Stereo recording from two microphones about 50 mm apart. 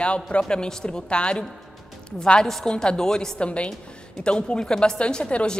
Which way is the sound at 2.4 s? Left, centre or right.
Centre.